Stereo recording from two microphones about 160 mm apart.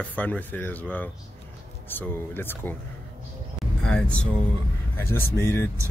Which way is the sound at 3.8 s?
5° left (ahead or behind).